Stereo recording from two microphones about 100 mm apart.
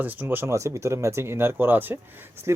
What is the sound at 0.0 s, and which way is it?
Speech, 20° right (ahead or behind).